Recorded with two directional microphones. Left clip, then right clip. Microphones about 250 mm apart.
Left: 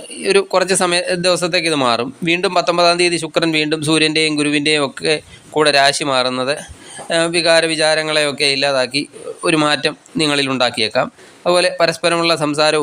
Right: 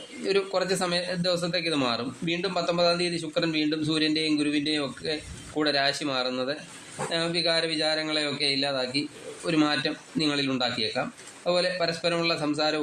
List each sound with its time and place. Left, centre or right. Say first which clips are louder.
0.3 s a man's voice: left 11 dB; left